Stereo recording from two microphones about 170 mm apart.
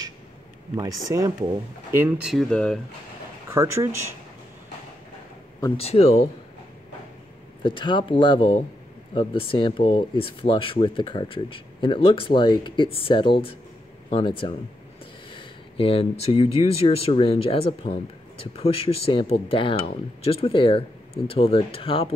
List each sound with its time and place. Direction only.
0.7 s speech: 20° right (ahead or behind)
2.5 s speech: 5° left (ahead or behind)
3.4 s speech: 15° right (ahead or behind)
5.8 s speech: 35° left (ahead or behind)
7.6 s speech: 30° left (ahead or behind)